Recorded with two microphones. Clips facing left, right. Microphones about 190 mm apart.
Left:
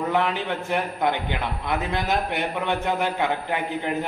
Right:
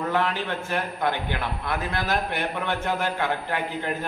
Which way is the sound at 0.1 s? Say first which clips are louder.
Left 2 dB; 15° left (ahead or behind).